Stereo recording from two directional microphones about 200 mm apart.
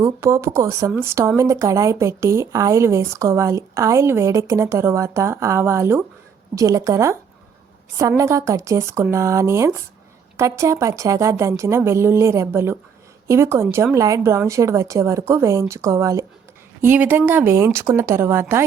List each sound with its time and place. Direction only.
0.0 s speech: 15° right (ahead or behind)